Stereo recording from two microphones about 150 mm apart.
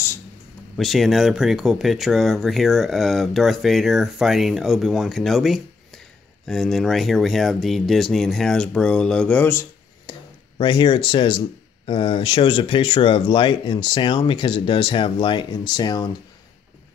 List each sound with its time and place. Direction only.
0.7 s speech: centre (ahead or behind)
10.1 s a sound: 30° left (ahead or behind)
10.6 s speech: 30° left (ahead or behind)